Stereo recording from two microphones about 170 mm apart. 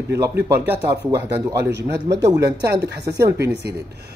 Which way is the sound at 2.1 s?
20° right (ahead or behind).